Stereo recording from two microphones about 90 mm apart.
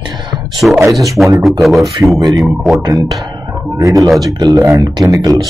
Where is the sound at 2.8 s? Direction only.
40° right (ahead or behind).